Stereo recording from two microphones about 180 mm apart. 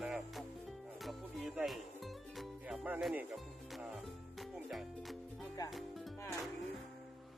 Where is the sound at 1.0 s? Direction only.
Centre (ahead or behind).